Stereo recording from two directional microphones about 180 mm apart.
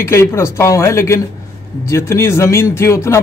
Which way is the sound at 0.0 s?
15° left (ahead or behind).